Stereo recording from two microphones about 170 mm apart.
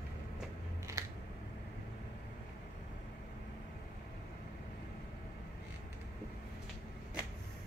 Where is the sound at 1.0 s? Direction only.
20° right (ahead or behind).